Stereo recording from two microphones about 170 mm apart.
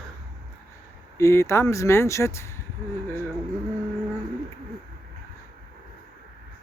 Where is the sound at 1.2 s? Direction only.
15° left (ahead or behind).